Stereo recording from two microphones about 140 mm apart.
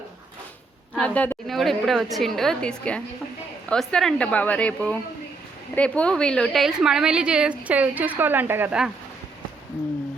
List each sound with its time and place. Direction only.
0.9 s a woman's voice: 10° left (ahead or behind); by 8.9 s 10° right (ahead or behind)